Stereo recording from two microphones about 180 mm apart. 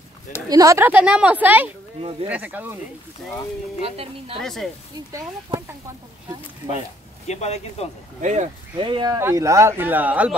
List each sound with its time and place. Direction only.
0.5 s speech: 20° right (ahead or behind)
3.8 s a woman's voice: 30° right (ahead or behind)
4.4 s speech: centre (ahead or behind)
7.2 s speech: 35° left (ahead or behind)
8.2 s a woman's voice: 40° right (ahead or behind)
8.7 s speech: 25° right (ahead or behind); by 10.3 s 10° right (ahead or behind)